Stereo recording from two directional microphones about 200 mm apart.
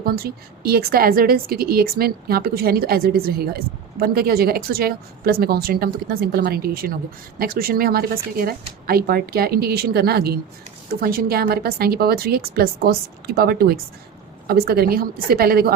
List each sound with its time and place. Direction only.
0.0 s a woman's voice: 50° right (ahead or behind)